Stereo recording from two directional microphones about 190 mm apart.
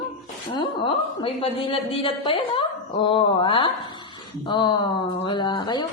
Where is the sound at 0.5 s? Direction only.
25° left (ahead or behind).